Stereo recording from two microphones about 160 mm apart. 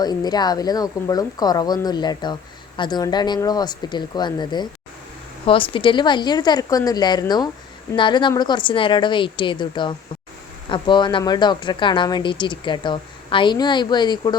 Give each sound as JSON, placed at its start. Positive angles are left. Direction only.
{"t": 0.0, "sound": "a woman's voice", "side_deg": 25}